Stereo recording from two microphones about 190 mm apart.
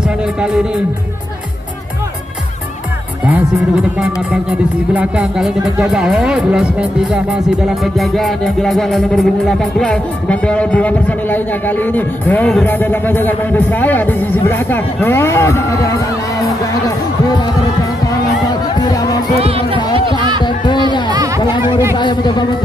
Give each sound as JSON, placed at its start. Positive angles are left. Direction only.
{"t": 0.4, "sound": "speech", "side_deg": -5}
{"t": 4.9, "sound": "speech", "side_deg": -5}
{"t": 7.8, "sound": "music", "side_deg": 0}
{"t": 18.8, "sound": "music", "side_deg": 20}
{"t": 19.4, "sound": "music", "side_deg": -30}
{"t": 20.4, "sound": "a sound", "side_deg": 25}
{"t": 21.4, "sound": "chatter", "side_deg": 25}
{"t": 21.9, "sound": "a man's voice", "side_deg": 25}